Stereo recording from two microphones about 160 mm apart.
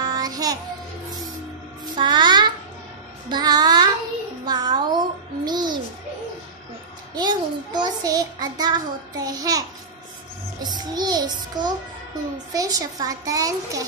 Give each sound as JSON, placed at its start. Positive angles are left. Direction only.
{"t": 0.0, "sound": "music", "side_deg": -25}
{"t": 2.0, "sound": "child singing", "side_deg": -30}
{"t": 3.3, "sound": "music", "side_deg": -25}
{"t": 7.2, "sound": "a child's voice", "side_deg": -25}